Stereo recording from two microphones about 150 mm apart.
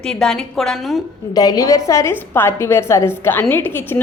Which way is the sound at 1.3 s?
25° left (ahead or behind).